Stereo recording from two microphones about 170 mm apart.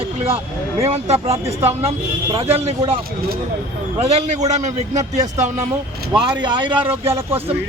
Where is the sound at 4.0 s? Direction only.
40° right (ahead or behind).